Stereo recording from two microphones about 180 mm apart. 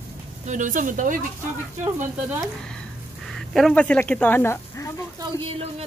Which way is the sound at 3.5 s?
5° left (ahead or behind).